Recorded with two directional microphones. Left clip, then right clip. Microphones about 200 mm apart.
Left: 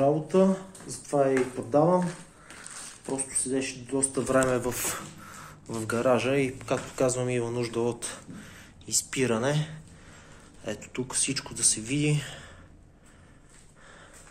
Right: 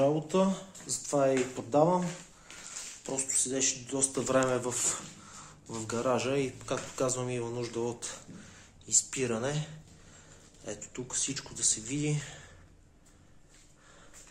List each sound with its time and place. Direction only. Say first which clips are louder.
0.0 s speech: left 4 dB; 40° right (ahead or behind)
1.7 s speech: left 3 dB; 15° right (ahead or behind)
3.1 s speech: left 2 dB; 15° right (ahead or behind); by 12.4 s centre (ahead or behind)